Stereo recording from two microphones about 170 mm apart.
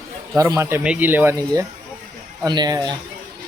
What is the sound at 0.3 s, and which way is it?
Speech, 15° right (ahead or behind).